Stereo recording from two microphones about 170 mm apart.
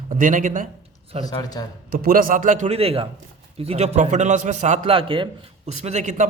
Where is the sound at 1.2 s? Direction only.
20° left (ahead or behind).